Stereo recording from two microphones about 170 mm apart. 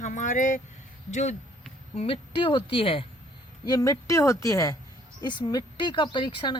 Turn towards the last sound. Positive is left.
turn(degrees=30)  # may be behind; listen again after turning